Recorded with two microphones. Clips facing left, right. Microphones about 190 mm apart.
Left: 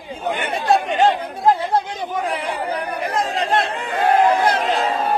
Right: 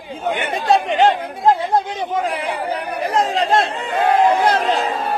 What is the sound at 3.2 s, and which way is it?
Chatter, 35° right (ahead or behind).